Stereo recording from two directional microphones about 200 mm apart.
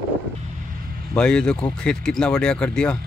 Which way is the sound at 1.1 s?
5° left (ahead or behind).